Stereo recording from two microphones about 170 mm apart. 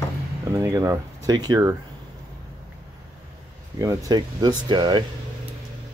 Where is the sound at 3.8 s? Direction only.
20° right (ahead or behind).